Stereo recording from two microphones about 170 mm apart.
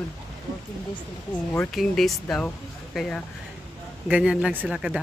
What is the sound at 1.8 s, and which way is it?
Speech, centre (ahead or behind).